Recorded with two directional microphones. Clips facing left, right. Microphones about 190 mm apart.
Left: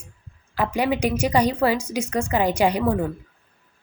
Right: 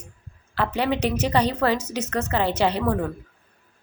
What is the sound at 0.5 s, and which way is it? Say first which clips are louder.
A woman's voice: left 1 dB; 10° left (ahead or behind).